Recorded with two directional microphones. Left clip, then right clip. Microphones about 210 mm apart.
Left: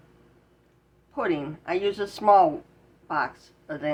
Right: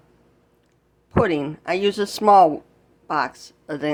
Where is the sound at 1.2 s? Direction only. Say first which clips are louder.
Right 7 dB; 55° right (ahead or behind).